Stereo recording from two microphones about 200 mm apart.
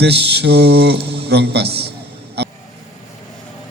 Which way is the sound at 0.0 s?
55° right (ahead or behind).